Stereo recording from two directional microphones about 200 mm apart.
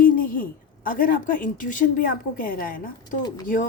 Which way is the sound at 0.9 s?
45° left (ahead or behind).